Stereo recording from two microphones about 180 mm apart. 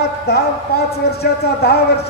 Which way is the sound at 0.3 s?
60° left (ahead or behind).